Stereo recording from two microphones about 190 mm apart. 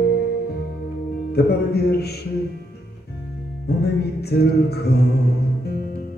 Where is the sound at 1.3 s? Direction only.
60° left (ahead or behind).